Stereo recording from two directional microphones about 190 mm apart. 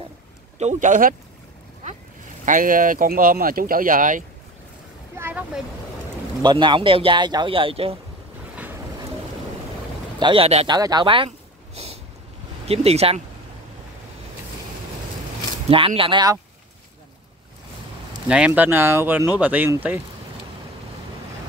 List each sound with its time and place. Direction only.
0.6 s speech: 40° right (ahead or behind)
2.4 s speech: 45° right (ahead or behind)
5.1 s a sound: 10° right (ahead or behind)
6.4 s speech: 25° right (ahead or behind)
10.1 s speech: 25° right (ahead or behind)
10.8 s a sound: 20° right (ahead or behind)
12.6 s speech: 30° right (ahead or behind)
15.7 s speech: 30° right (ahead or behind)
18.3 s speech: 5° right (ahead or behind)